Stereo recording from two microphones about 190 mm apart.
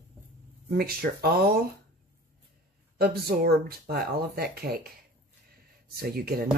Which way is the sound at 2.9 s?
55° right (ahead or behind).